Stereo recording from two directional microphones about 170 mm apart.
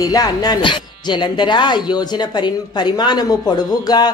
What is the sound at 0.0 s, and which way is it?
Speech, 20° left (ahead or behind).